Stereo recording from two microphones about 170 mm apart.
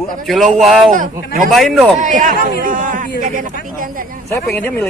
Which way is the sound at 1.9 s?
50° right (ahead or behind).